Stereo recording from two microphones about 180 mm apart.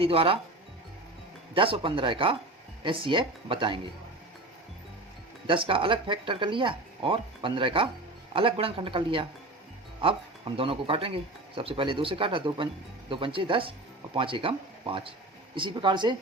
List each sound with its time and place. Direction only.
0.0 s speech: 30° right (ahead or behind)
1.5 s speech: 30° right (ahead or behind)
5.5 s speech: 30° right (ahead or behind)